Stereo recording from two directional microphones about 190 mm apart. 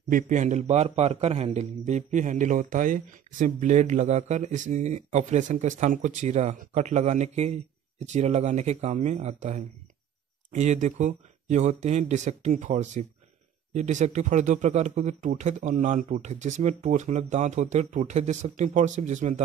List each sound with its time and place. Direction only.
0.1 s a man's voice: 40° right (ahead or behind)